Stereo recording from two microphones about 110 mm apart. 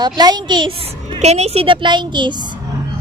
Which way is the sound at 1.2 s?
75° right (ahead or behind).